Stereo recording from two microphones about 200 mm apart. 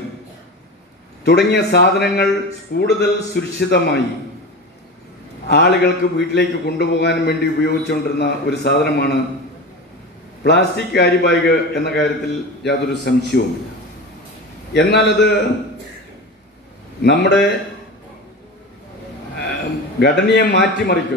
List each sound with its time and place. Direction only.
1.2 s a man's voice: 55° left (ahead or behind)
5.5 s a man's voice: 55° left (ahead or behind)
10.4 s a man's voice: 55° left (ahead or behind)
14.7 s a man's voice: 60° left (ahead or behind)
17.0 s a man's voice: 55° left (ahead or behind)
20.0 s a man's voice: 55° left (ahead or behind)